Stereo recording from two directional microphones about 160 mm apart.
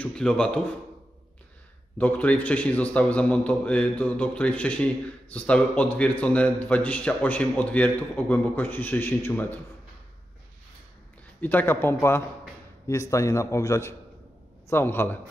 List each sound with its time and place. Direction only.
0.0 s a man's voice: 5° left (ahead or behind)
2.0 s a man's voice: 10° left (ahead or behind)
11.4 s a man's voice: 10° left (ahead or behind)